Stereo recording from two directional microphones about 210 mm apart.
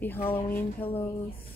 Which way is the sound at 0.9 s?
25° left (ahead or behind).